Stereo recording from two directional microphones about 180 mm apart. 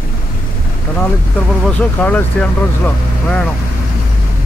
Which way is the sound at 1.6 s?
10° left (ahead or behind).